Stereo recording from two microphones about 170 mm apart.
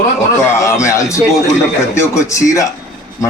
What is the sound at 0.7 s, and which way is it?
A man's voice, 15° left (ahead or behind).